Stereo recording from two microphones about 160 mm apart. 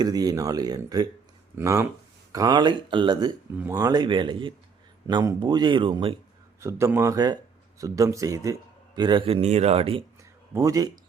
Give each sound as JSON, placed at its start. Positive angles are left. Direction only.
{"t": 0.0, "sound": "speech", "side_deg": -25}
{"t": 6.6, "sound": "speech", "side_deg": -15}
{"t": 10.5, "sound": "speech", "side_deg": -20}